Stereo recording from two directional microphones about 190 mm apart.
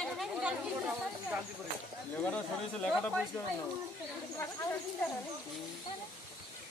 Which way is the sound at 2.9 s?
Centre (ahead or behind).